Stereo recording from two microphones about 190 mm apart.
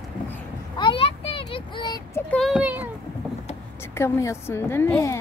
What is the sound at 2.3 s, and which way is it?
Speech, centre (ahead or behind).